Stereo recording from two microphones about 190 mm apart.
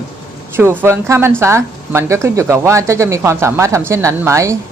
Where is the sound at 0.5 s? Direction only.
10° right (ahead or behind).